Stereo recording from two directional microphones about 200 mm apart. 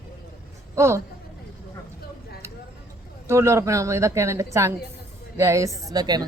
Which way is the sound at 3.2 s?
15° right (ahead or behind).